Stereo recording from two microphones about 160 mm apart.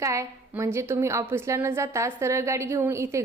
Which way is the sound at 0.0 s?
20° right (ahead or behind).